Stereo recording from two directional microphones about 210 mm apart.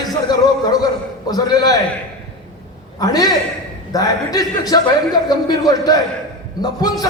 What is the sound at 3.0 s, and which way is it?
A man's voice, 20° left (ahead or behind).